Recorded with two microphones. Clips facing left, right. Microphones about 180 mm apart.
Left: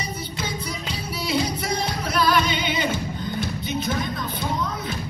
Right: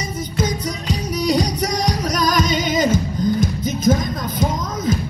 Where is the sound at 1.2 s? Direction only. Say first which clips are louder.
Right 5 dB; 40° right (ahead or behind).